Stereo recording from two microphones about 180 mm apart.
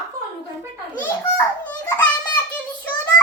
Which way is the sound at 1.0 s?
10° left (ahead or behind).